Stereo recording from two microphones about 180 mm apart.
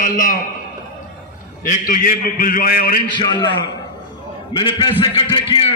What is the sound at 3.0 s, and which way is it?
Speech, 25° left (ahead or behind).